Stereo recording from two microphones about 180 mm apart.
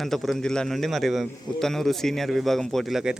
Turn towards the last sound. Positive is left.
turn(degrees=-5)  # may be behind; listen again after turning